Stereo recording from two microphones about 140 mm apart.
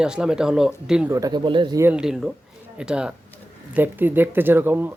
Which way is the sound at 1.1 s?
25° right (ahead or behind).